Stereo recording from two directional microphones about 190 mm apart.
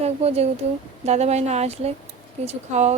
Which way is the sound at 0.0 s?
35° right (ahead or behind).